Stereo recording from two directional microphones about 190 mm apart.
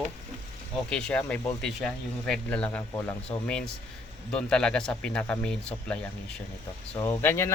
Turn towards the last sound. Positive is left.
turn(degrees=15)  # may be behind; listen again after turning